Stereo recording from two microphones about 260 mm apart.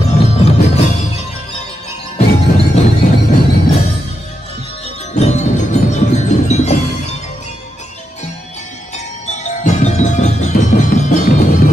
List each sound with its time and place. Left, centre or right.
0.2 s music: left
2.1 s music: left
5.1 s music: left
8.9 s music: left